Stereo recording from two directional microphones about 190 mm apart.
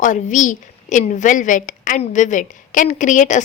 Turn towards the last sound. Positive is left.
turn(degrees=40)  # may be behind; listen again after turning